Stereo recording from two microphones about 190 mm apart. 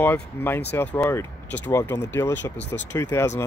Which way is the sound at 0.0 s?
10° left (ahead or behind).